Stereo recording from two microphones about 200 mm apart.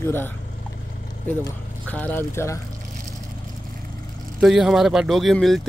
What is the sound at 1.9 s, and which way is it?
Speech, 10° left (ahead or behind).